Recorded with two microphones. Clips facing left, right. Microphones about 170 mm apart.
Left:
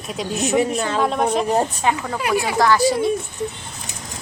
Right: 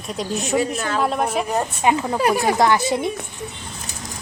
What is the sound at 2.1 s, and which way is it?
Speech, 40° right (ahead or behind).